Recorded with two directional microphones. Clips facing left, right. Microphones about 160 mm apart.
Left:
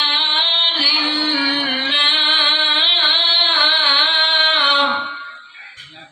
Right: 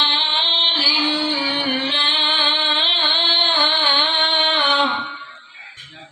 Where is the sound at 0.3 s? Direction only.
35° right (ahead or behind).